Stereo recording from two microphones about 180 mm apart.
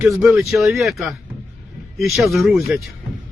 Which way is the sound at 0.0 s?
5° right (ahead or behind).